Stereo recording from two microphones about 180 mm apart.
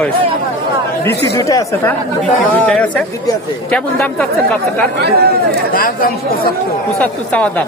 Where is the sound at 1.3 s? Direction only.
20° left (ahead or behind).